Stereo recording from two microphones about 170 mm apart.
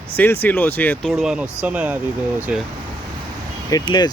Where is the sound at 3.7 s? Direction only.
25° left (ahead or behind).